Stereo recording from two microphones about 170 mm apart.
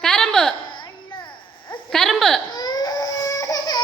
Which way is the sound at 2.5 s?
25° left (ahead or behind).